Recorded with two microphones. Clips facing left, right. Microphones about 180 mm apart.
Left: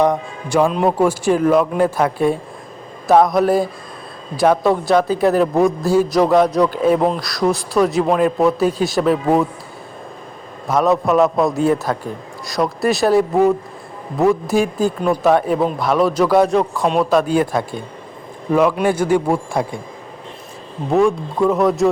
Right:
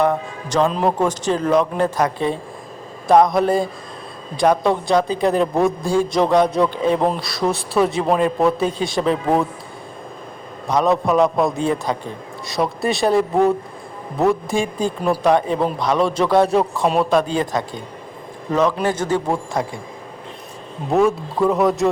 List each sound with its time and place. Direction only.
0.0 s a man's voice: 15° left (ahead or behind)
10.7 s a man's voice: centre (ahead or behind)
20.9 s a man's voice: centre (ahead or behind)